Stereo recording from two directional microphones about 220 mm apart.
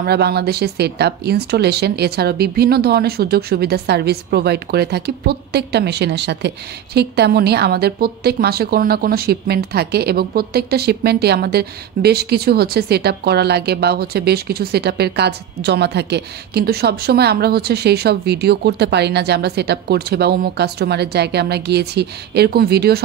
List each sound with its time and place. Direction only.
0.0 s speech: 45° right (ahead or behind)